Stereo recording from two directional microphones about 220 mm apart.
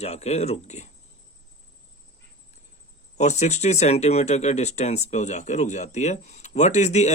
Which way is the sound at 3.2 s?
30° left (ahead or behind).